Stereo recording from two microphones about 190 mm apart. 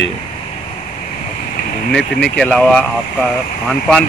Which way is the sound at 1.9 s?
Centre (ahead or behind).